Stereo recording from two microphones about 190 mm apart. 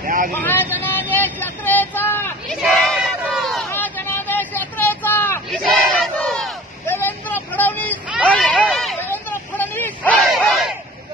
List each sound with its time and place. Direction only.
0.0 s vehicle: 45° right (ahead or behind)
0.4 s vehicle: 10° left (ahead or behind)
2.5 s crowd: centre (ahead or behind)
3.7 s vehicle: 10° left (ahead or behind)
5.6 s battle cry: centre (ahead or behind)
6.9 s vehicle: 10° left (ahead or behind)
8.3 s hubbub: 5° left (ahead or behind)